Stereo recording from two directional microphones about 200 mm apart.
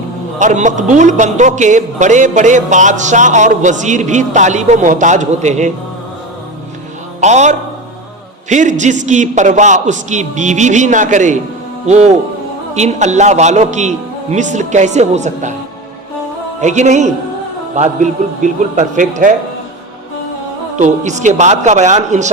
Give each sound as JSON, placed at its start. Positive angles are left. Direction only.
{"t": 0.3, "sound": "speech", "side_deg": -35}
{"t": 7.2, "sound": "speech", "side_deg": -35}
{"t": 16.6, "sound": "speech", "side_deg": -35}
{"t": 20.7, "sound": "speech", "side_deg": -40}